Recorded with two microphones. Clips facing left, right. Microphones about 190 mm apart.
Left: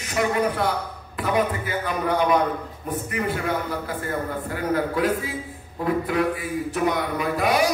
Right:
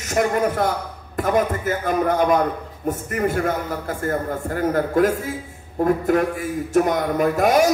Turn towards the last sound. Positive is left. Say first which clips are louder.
# right 5 dB
turn(degrees=-45)  # may be behind; listen again after turning